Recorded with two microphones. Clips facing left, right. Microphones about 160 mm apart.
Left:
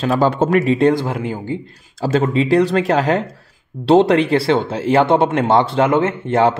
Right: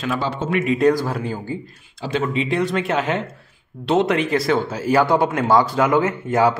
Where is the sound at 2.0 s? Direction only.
40° left (ahead or behind).